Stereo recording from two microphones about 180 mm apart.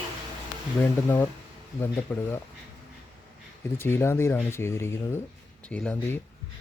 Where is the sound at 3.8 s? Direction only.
15° left (ahead or behind).